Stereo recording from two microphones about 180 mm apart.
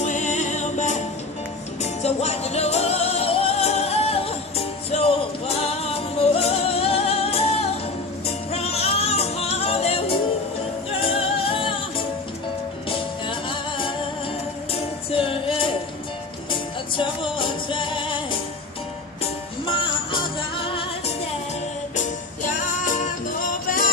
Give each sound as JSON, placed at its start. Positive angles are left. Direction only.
{"t": 0.0, "sound": "music", "side_deg": 40}
{"t": 19.7, "sound": "music", "side_deg": 25}
{"t": 21.9, "sound": "music", "side_deg": 45}